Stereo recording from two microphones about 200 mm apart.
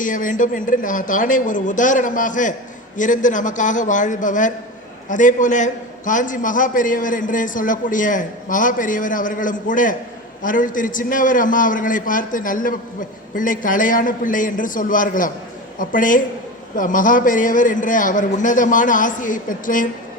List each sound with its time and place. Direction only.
0.0 s a man's voice: 40° left (ahead or behind)